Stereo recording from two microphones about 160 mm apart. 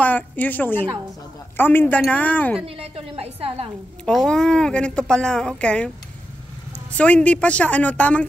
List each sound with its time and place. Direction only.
0.0 s a woman's voice: 10° left (ahead or behind)
2.6 s a woman's voice: 40° right (ahead or behind)
4.0 s speech: 5° left (ahead or behind)
7.0 s a woman's voice: 10° left (ahead or behind)